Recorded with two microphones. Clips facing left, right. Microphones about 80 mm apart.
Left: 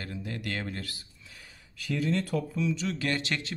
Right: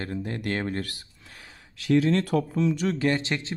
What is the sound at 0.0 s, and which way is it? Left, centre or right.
Speech, right.